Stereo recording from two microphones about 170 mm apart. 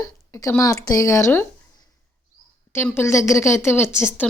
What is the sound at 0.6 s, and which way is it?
Speech, 20° left (ahead or behind).